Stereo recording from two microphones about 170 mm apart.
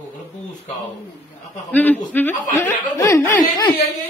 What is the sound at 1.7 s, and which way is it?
Chuckle, 10° left (ahead or behind).